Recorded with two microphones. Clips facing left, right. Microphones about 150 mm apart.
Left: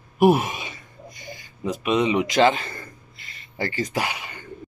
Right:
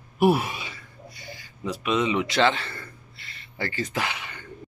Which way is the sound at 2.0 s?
15° left (ahead or behind).